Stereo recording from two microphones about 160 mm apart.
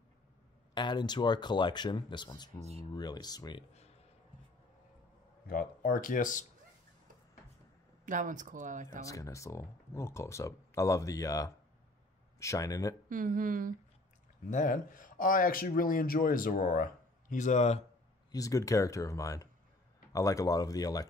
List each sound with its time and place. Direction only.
0.7 s speech: 30° left (ahead or behind)
5.5 s speech: 60° left (ahead or behind)
8.0 s speech: 55° right (ahead or behind)
9.0 s speech: 20° left (ahead or behind)
13.1 s speech: 55° right (ahead or behind)
14.5 s speech: 55° left (ahead or behind)
18.3 s speech: 20° left (ahead or behind)